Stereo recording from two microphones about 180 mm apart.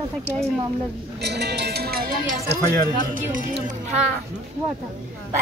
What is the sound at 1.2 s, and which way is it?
Speech, 70° right (ahead or behind).